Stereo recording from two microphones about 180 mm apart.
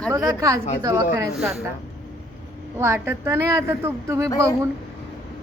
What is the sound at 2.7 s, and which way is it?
A woman's voice, 15° right (ahead or behind).